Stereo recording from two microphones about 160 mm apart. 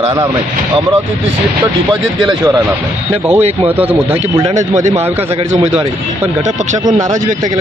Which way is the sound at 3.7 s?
10° right (ahead or behind).